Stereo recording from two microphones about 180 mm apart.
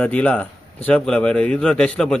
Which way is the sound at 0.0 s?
10° left (ahead or behind).